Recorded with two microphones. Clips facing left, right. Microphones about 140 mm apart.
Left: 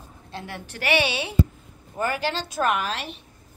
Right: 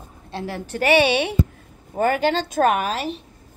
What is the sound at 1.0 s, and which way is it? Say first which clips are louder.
A woman's voice: right 4 dB; 60° right (ahead or behind).